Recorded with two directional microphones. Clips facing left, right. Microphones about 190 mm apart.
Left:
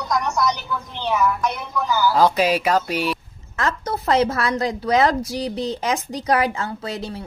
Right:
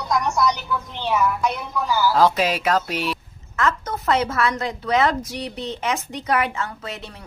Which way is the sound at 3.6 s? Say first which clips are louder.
Right 1 dB; 35° left (ahead or behind).